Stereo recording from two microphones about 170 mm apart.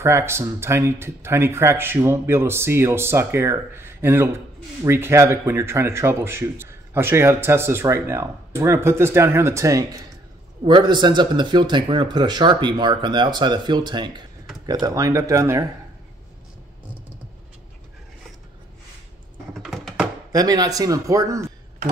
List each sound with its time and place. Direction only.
0.0 s speech: 15° right (ahead or behind)
19.6 s a sound: centre (ahead or behind)
20.3 s speech: 20° right (ahead or behind)